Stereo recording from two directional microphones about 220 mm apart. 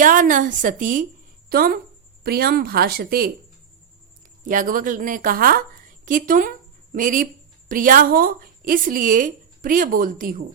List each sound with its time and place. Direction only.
0.0 s a woman's voice: 35° right (ahead or behind)
4.4 s a woman's voice: 40° right (ahead or behind)